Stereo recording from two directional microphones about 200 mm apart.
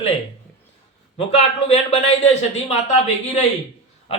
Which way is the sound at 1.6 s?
30° left (ahead or behind).